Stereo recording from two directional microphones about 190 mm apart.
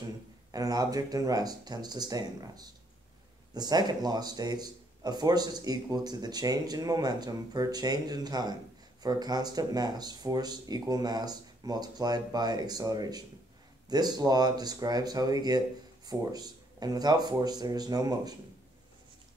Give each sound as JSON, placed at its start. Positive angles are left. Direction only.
{"t": 0.5, "sound": "speech", "side_deg": -20}